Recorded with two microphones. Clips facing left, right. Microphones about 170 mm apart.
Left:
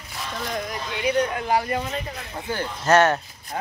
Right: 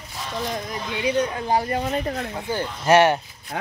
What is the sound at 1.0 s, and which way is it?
Speech, 25° right (ahead or behind).